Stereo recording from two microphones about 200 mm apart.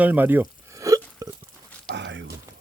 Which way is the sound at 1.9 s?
60° right (ahead or behind).